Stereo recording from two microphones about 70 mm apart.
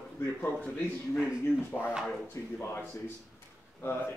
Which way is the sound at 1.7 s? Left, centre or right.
Centre.